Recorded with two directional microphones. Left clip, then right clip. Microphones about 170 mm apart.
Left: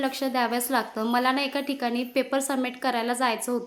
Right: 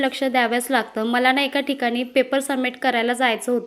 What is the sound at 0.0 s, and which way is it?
A woman's voice, 15° right (ahead or behind).